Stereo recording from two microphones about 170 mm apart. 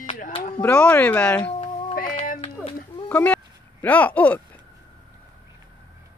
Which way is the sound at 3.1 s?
10° left (ahead or behind).